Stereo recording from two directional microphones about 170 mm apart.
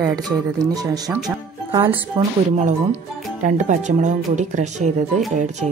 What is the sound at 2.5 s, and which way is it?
Speech, 45° right (ahead or behind).